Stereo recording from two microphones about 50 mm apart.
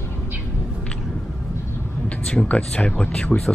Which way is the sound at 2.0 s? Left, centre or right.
Left.